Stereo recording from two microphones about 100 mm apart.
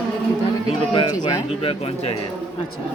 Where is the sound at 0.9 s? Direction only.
50° left (ahead or behind).